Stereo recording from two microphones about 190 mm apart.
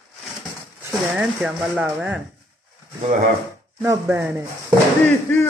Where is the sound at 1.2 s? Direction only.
5° right (ahead or behind).